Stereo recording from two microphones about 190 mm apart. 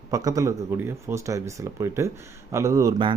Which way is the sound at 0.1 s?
20° right (ahead or behind).